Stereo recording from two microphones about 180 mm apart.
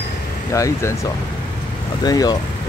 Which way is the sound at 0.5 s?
15° left (ahead or behind).